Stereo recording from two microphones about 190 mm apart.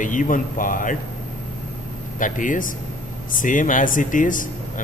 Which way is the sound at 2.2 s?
45° left (ahead or behind).